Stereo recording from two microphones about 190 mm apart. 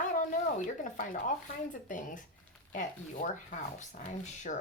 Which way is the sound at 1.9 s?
45° left (ahead or behind).